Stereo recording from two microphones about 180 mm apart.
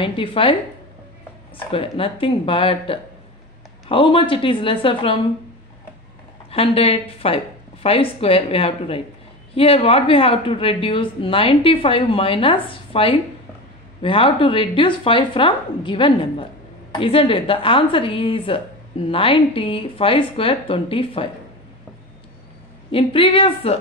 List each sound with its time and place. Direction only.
0.0 s a woman's voice: 30° left (ahead or behind)
1.7 s a woman's voice: 30° left (ahead or behind)
6.5 s a woman's voice: 30° left (ahead or behind)
22.8 s a woman's voice: 30° left (ahead or behind)